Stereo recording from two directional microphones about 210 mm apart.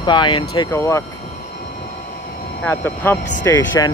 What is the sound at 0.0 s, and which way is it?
Speech, 20° left (ahead or behind).